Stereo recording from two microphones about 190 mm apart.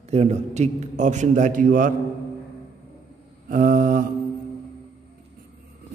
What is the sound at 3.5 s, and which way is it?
Mantra, 45° right (ahead or behind).